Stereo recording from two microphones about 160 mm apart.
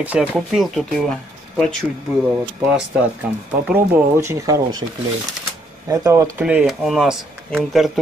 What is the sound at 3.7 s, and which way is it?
Speech, 15° right (ahead or behind).